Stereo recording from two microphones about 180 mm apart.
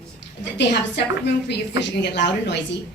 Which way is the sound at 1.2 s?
70° left (ahead or behind).